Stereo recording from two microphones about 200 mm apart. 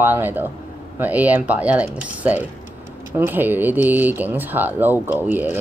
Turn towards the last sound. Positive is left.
turn(degrees=-10)  # may be behind; listen again after turning